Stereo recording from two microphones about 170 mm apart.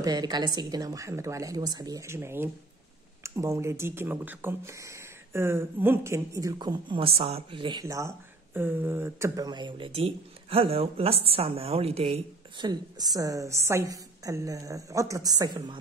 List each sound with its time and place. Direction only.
0.0 s speech: 25° right (ahead or behind)
7.8 s speech: 15° right (ahead or behind)